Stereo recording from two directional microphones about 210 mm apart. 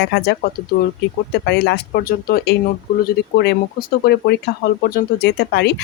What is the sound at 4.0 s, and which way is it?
Speech, 50° left (ahead or behind).